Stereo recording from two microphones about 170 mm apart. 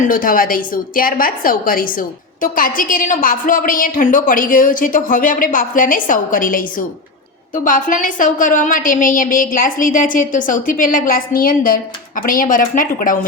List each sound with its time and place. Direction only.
0.0 s a woman's voice: 55° left (ahead or behind)